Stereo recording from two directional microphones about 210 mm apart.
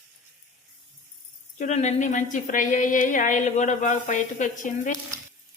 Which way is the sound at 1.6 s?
35° left (ahead or behind).